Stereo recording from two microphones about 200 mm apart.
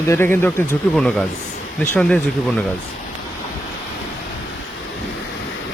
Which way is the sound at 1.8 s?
5° left (ahead or behind).